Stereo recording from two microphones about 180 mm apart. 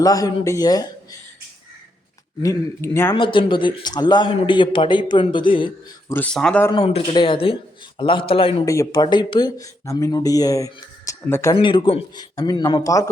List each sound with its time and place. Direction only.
0.0 s speech: 20° left (ahead or behind)
2.4 s speech: 15° left (ahead or behind)
3.2 s speech: 25° left (ahead or behind)
6.1 s speech: 10° left (ahead or behind)
6.6 s speech: 20° left (ahead or behind)
8.6 s speech: 15° left (ahead or behind)
11.5 s speech: 30° left (ahead or behind)